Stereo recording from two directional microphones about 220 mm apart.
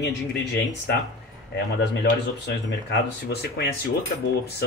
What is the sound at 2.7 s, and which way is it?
Speech, 50° left (ahead or behind).